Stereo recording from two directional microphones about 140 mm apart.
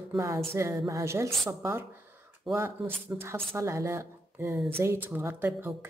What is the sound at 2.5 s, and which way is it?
Speech, centre (ahead or behind).